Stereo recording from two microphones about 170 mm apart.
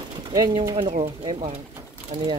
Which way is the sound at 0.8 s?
40° right (ahead or behind).